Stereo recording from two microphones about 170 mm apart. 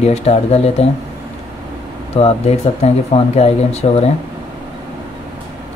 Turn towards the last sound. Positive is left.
turn(degrees=40)  # may be behind; listen again after turning